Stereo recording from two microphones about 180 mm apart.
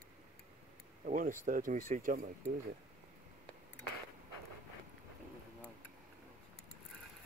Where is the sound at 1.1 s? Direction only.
45° right (ahead or behind).